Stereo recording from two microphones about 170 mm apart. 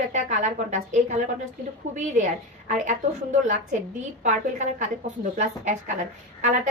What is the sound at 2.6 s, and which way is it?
Speech, 45° right (ahead or behind).